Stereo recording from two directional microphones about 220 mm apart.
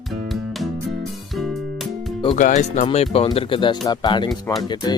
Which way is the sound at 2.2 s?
25° left (ahead or behind).